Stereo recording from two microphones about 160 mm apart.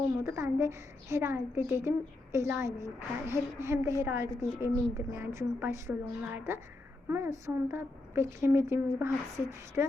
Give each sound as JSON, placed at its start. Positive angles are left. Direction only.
{"t": 0.3, "sound": "a woman's voice", "side_deg": -15}